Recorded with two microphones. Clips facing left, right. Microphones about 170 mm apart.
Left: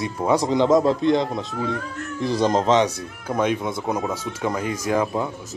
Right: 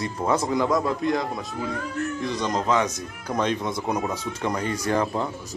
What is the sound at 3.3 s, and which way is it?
Speech, 5° left (ahead or behind).